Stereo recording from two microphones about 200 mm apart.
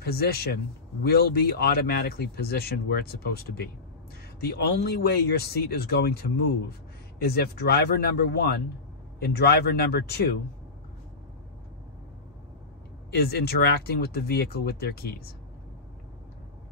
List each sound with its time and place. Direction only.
0.0 s speech: 50° left (ahead or behind)
13.1 s speech: 50° left (ahead or behind)